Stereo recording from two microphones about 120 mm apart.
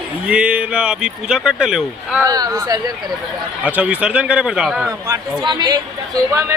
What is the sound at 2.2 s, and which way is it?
Speech, 30° right (ahead or behind).